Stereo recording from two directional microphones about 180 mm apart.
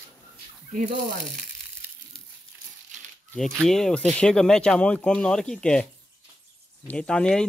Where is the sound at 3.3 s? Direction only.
Centre (ahead or behind).